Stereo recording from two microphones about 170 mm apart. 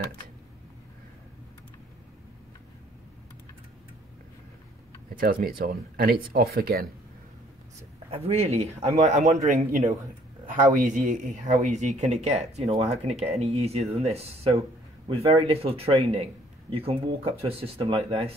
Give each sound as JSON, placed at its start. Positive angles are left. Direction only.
{"t": 5.1, "sound": "speech", "side_deg": -60}
{"t": 8.1, "sound": "a man's voice", "side_deg": -35}